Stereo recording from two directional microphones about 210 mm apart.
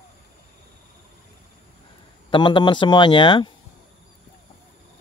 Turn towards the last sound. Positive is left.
turn(degrees=25)  # may be behind; listen again after turning